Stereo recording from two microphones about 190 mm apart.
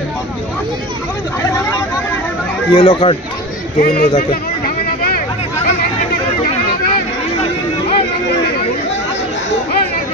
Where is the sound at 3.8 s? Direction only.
50° left (ahead or behind).